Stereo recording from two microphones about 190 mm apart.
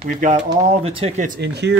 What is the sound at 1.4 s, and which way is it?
Speech, 60° right (ahead or behind).